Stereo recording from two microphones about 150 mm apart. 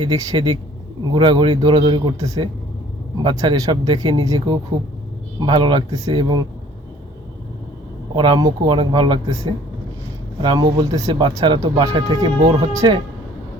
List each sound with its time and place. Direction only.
0.0 s speech: 30° right (ahead or behind)
8.1 s speech: 30° right (ahead or behind)